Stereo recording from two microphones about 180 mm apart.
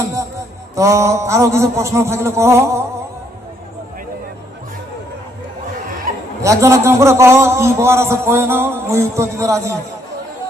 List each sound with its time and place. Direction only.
0.8 s a man's voice: 15° right (ahead or behind)
6.4 s a man's voice: 15° right (ahead or behind)